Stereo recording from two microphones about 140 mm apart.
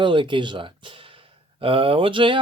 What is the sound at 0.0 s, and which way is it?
Speech, 35° right (ahead or behind).